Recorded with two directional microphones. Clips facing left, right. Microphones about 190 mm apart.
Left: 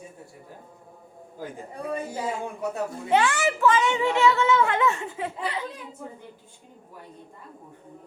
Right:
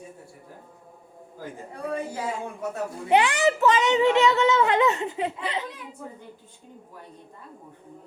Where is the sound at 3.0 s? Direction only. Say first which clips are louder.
Right 3 dB; 15° right (ahead or behind).